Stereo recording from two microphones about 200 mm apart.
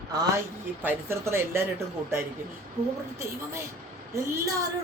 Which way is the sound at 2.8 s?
30° right (ahead or behind).